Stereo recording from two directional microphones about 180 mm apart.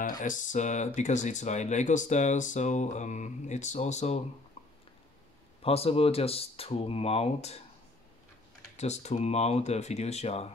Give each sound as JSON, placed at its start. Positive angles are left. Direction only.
{"t": 0.2, "sound": "speech", "side_deg": 45}
{"t": 4.6, "sound": "a sound", "side_deg": 35}
{"t": 5.6, "sound": "speech", "side_deg": 35}
{"t": 8.7, "sound": "speech", "side_deg": 40}